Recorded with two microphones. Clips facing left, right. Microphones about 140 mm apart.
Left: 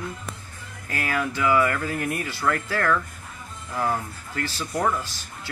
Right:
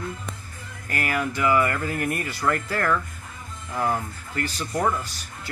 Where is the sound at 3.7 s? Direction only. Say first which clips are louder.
Right 1 dB; 15° right (ahead or behind).